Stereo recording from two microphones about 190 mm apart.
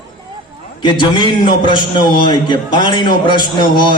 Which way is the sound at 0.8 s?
25° left (ahead or behind).